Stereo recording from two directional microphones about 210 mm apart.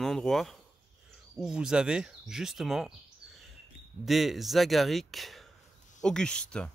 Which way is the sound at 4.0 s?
Centre (ahead or behind).